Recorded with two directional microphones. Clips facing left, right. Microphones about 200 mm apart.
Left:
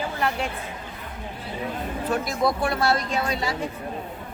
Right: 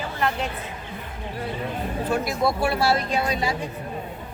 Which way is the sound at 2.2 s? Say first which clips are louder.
Right 1 dB; centre (ahead or behind).